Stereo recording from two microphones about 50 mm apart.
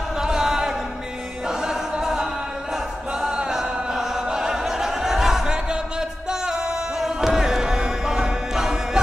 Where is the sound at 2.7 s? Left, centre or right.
Centre.